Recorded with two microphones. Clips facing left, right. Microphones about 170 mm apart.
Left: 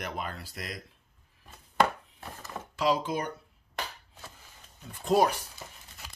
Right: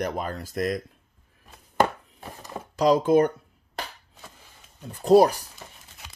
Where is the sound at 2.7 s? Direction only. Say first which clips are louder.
Right 9 dB; 45° right (ahead or behind).